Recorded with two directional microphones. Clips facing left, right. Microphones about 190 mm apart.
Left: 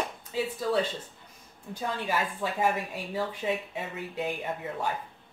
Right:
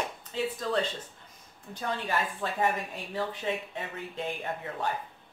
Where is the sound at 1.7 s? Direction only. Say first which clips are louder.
Left 1 dB; 5° left (ahead or behind).